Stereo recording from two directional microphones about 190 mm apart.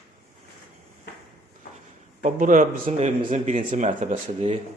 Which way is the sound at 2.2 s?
40° right (ahead or behind).